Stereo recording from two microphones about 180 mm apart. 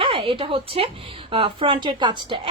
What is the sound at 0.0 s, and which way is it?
A woman's voice, 30° right (ahead or behind).